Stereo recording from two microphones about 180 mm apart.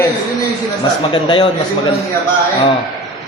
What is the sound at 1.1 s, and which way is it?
Speech, 30° left (ahead or behind).